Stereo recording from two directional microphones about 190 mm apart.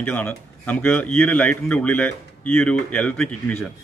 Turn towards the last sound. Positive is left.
turn(degrees=5)  # may be behind; listen again after turning